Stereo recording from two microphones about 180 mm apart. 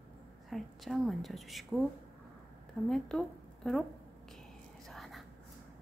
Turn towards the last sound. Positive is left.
turn(degrees=0)  # may be behind; listen again after turning